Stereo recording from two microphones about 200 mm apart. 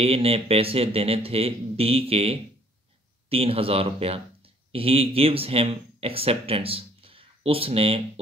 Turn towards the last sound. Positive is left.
turn(degrees=-30)  # may be behind; listen again after turning